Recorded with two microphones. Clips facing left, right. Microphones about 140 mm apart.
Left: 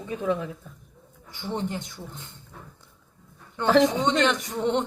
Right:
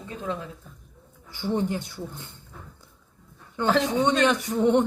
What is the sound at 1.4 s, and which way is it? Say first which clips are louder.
Speech: right 4 dB; 10° right (ahead or behind).